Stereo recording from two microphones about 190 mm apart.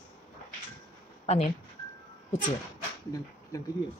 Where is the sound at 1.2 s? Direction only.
35° left (ahead or behind).